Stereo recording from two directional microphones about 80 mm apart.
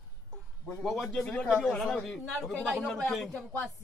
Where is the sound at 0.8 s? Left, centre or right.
Centre.